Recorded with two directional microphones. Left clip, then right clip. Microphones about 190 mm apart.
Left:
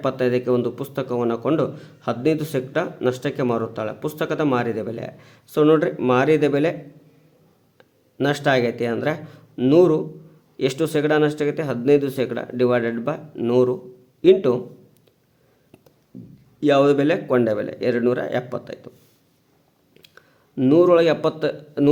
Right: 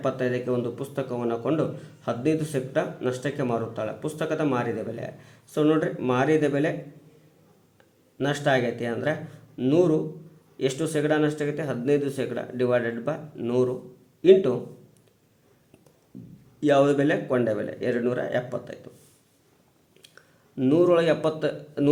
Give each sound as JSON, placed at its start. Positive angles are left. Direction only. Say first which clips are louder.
{"t": 0.0, "sound": "a man's voice", "louder": "left 5 dB", "side_deg": 35}
{"t": 8.2, "sound": "a man's voice", "louder": "left 4 dB", "side_deg": 35}
{"t": 16.6, "sound": "a man's voice", "louder": "left 4 dB", "side_deg": 25}
{"t": 20.0, "sound": "a man's voice", "louder": "left 3 dB", "side_deg": 30}